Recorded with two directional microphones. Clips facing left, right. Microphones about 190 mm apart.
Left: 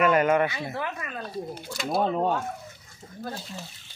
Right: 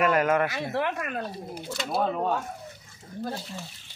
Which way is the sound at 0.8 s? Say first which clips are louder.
Right 4 dB; 65° right (ahead or behind).